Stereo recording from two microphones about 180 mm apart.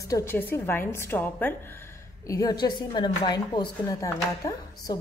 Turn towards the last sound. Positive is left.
turn(degrees=20)  # may be behind; listen again after turning